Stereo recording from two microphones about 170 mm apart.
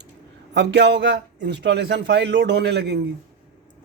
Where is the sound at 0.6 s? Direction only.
90° right.